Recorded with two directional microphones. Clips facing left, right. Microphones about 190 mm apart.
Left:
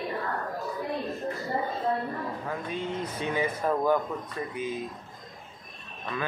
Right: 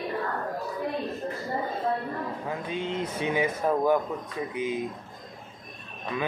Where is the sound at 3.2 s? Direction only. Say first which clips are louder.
Right 2 dB; 15° right (ahead or behind).